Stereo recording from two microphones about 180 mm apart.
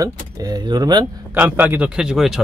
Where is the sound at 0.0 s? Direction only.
20° right (ahead or behind).